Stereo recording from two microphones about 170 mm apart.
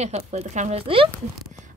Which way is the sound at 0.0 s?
40° right (ahead or behind).